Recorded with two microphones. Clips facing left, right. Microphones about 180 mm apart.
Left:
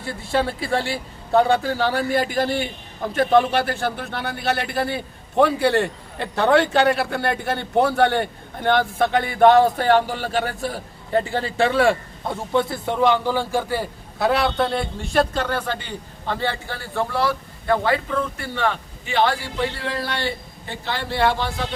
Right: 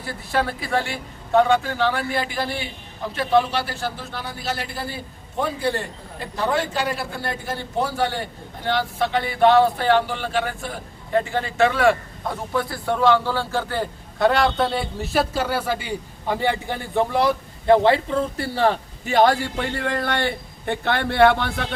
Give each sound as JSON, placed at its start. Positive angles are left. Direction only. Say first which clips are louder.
{"t": 0.0, "sound": "a man's voice", "louder": "left 2 dB", "side_deg": 25}